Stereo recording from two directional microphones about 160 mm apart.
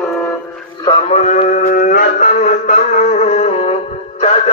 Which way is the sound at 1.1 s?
45° left (ahead or behind).